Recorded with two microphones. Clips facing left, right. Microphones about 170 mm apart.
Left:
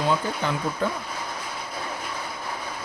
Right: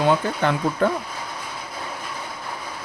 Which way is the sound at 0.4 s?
60° right (ahead or behind).